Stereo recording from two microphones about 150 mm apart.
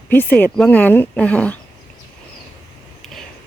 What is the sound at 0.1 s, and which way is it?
Speech, 10° left (ahead or behind).